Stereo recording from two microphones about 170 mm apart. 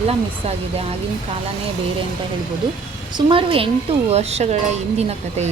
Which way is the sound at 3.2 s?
30° right (ahead or behind).